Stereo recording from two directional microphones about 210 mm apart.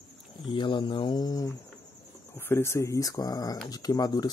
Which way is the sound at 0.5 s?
20° left (ahead or behind).